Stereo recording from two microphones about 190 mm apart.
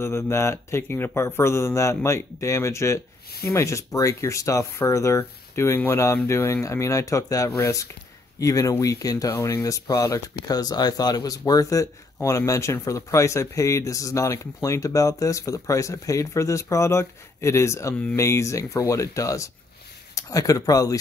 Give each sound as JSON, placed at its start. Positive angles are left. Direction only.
{"t": 0.0, "sound": "speech", "side_deg": 15}